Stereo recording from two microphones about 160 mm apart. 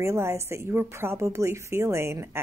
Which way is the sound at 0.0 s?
15° right (ahead or behind).